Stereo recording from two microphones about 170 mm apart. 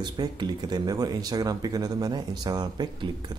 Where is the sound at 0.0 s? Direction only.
25° right (ahead or behind).